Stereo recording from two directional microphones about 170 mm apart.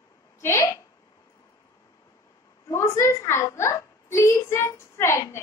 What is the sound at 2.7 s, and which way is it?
A woman's voice, 15° left (ahead or behind).